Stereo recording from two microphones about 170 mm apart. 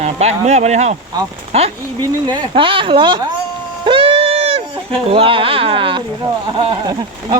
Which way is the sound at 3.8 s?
30° right (ahead or behind).